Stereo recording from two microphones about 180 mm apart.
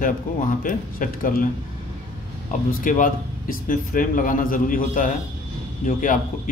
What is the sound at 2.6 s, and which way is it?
Speech, 50° left (ahead or behind).